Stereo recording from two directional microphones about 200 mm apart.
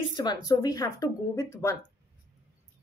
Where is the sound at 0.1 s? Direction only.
20° left (ahead or behind).